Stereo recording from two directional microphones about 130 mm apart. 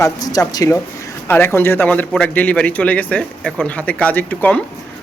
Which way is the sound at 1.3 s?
15° left (ahead or behind).